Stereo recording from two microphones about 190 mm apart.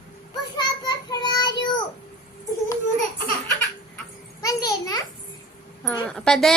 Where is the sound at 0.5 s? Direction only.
20° left (ahead or behind).